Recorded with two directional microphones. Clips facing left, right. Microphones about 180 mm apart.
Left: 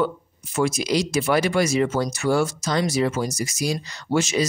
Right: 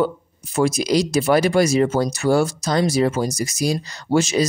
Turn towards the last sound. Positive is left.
turn(degrees=-35)  # may be behind; listen again after turning